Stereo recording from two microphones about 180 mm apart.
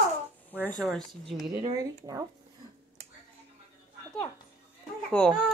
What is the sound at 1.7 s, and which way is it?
Speech, 20° right (ahead or behind).